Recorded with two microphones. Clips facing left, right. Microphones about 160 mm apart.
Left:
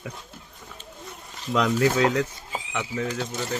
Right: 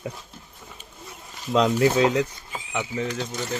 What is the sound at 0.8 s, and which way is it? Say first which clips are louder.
Wild animals: left 4 dB; 5° right (ahead or behind).